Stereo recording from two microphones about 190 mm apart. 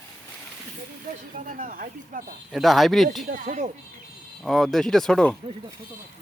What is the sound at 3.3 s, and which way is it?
Speech, 40° right (ahead or behind).